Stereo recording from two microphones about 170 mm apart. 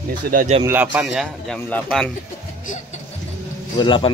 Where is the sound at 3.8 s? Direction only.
30° left (ahead or behind).